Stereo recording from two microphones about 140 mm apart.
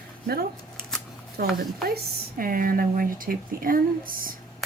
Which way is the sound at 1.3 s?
90° right.